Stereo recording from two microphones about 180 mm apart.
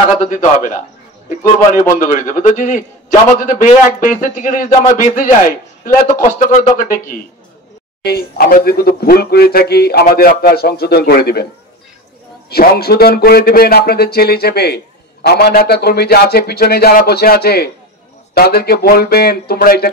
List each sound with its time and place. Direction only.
0.2 s a man's voice: 45° left (ahead or behind)
2.0 s a man's voice: 45° left (ahead or behind)
12.4 s a man's voice: 60° left (ahead or behind)